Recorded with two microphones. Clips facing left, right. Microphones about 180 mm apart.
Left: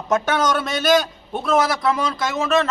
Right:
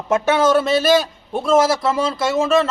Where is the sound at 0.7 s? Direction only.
5° right (ahead or behind).